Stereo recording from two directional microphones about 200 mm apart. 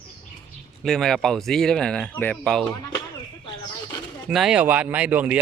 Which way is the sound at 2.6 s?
20° left (ahead or behind).